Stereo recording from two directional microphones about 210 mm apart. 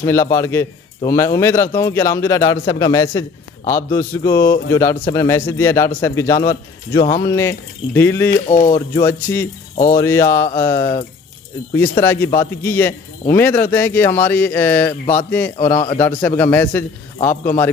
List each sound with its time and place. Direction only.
0.0 s a man's voice: 10° left (ahead or behind)
8.5 s speech: 40° left (ahead or behind)
8.9 s a man's voice: 10° left (ahead or behind)
15.5 s a man's voice: 30° left (ahead or behind)
16.0 s a man's voice: 5° left (ahead or behind)